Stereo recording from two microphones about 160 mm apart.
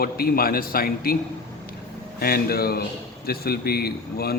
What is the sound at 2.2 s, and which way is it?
A man's voice, 70° left (ahead or behind).